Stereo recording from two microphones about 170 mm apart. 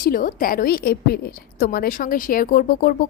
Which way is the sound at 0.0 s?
55° left (ahead or behind).